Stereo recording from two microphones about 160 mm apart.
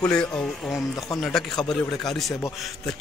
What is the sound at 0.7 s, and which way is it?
Speech, 20° left (ahead or behind).